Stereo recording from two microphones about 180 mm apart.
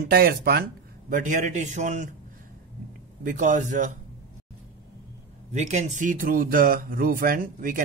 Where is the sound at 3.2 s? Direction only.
45° right (ahead or behind).